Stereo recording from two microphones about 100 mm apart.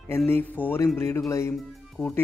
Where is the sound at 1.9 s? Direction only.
15° left (ahead or behind).